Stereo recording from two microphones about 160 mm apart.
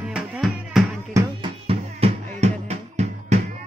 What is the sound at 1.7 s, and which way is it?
Music, 40° right (ahead or behind).